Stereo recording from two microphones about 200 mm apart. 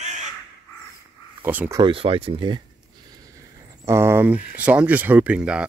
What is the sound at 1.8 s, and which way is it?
Speech, 25° right (ahead or behind).